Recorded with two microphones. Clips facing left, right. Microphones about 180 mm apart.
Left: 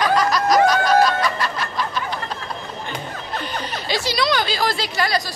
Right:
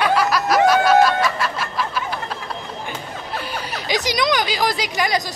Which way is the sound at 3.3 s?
10° right (ahead or behind).